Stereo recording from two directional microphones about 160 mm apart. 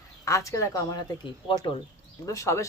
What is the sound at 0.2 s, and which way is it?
Speech, 20° left (ahead or behind).